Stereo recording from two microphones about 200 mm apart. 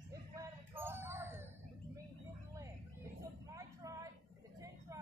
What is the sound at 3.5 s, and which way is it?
Vehicle, 15° right (ahead or behind).